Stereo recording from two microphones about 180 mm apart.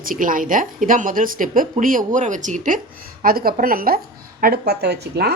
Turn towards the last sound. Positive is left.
turn(degrees=-65)  # may be behind; listen again after turning